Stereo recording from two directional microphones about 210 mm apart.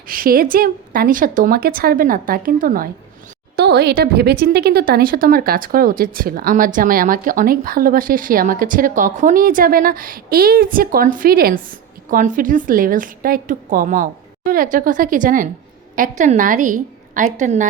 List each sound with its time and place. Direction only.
0.1 s speech: 45° right (ahead or behind)